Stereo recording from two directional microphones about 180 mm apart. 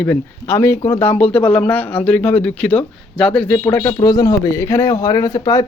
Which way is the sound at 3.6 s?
15° left (ahead or behind).